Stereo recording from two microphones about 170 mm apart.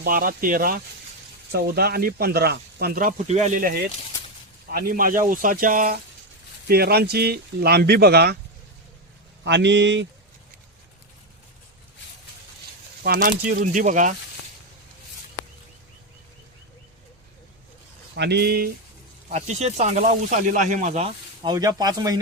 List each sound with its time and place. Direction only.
0.0 s speech: 60° right (ahead or behind)
4.7 s speech: 60° right (ahead or behind)
9.4 s speech: 90° right
13.0 s speech: 55° right (ahead or behind)
18.2 s speech: 70° right (ahead or behind)
19.3 s speech: 40° right (ahead or behind)
21.4 s speech: 20° right (ahead or behind)